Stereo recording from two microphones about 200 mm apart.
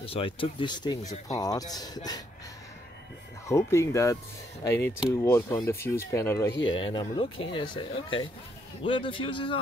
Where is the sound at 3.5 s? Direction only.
15° left (ahead or behind).